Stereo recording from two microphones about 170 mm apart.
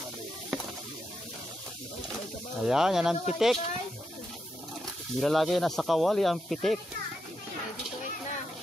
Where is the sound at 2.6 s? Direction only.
5° right (ahead or behind).